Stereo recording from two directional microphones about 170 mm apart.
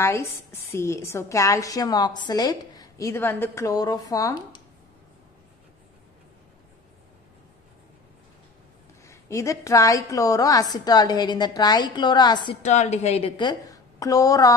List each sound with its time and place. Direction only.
0.0 s a woman's voice: 15° left (ahead or behind)
9.0 s a woman's voice: 15° left (ahead or behind)
12.6 s a woman's voice: 45° left (ahead or behind); by 14.5 s 20° left (ahead or behind)